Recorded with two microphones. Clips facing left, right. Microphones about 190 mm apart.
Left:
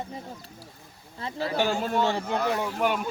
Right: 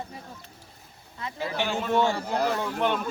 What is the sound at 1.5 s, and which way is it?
Speech, 40° left (ahead or behind).